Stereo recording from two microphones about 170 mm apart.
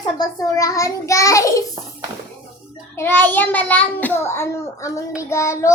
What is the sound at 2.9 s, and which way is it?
A child's voice, 10° left (ahead or behind).